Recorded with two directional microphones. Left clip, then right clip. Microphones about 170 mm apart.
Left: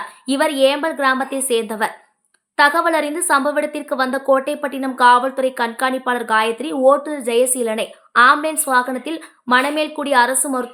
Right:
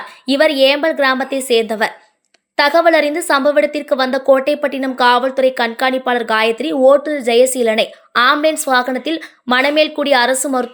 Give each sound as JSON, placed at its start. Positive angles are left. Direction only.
{"t": 0.3, "sound": "a woman's voice", "side_deg": -15}